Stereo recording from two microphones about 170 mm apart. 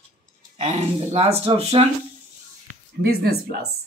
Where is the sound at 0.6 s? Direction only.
40° right (ahead or behind).